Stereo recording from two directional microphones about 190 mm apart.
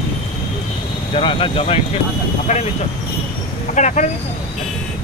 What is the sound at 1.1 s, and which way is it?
Speech, 30° left (ahead or behind).